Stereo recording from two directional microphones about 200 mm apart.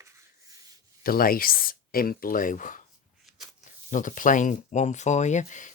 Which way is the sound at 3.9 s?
40° left (ahead or behind).